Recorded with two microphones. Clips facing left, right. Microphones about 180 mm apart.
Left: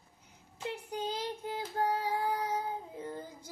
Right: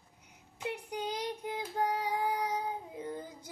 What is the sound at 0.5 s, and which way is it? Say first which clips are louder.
Child singing: even; 15° right (ahead or behind).